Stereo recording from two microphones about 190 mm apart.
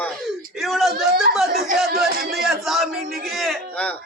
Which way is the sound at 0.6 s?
Centre (ahead or behind).